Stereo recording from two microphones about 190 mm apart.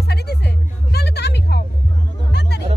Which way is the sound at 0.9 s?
60° left (ahead or behind).